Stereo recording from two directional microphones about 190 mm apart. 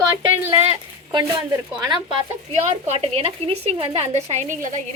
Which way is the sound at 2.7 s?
35° right (ahead or behind).